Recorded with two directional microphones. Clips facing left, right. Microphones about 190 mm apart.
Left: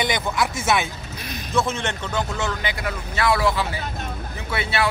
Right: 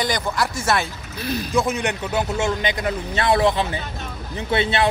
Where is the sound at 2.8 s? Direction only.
25° right (ahead or behind).